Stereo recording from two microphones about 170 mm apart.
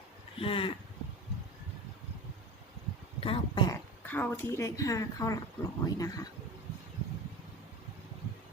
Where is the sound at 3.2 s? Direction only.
35° left (ahead or behind).